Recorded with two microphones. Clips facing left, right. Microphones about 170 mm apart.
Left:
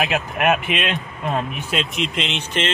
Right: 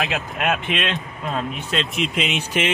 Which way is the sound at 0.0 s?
20° left (ahead or behind).